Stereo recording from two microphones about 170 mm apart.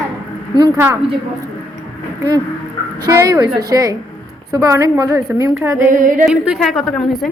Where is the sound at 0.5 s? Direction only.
25° right (ahead or behind).